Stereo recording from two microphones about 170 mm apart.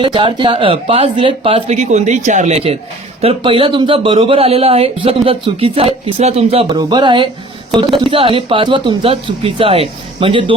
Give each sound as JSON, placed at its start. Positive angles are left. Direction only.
{"t": 0.0, "sound": "speech", "side_deg": -30}
{"t": 6.7, "sound": "speech", "side_deg": -25}